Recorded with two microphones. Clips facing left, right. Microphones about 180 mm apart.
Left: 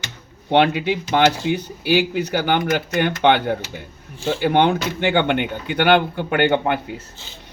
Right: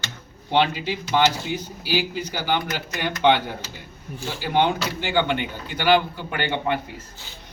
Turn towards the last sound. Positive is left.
turn(degrees=65)  # may be behind; listen again after turning